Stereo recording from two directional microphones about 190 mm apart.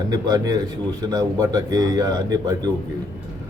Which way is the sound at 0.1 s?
20° right (ahead or behind).